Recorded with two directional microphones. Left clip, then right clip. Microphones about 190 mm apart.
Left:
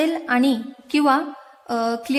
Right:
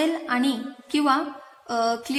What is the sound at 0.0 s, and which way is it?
A woman's voice, 40° left (ahead or behind).